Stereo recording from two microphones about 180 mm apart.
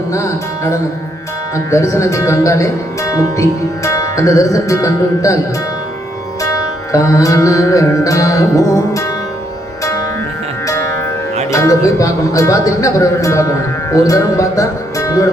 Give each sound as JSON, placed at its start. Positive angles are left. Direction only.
{"t": 0.1, "sound": "speech", "side_deg": 15}
{"t": 6.4, "sound": "music", "side_deg": 20}
{"t": 11.5, "sound": "speech", "side_deg": 20}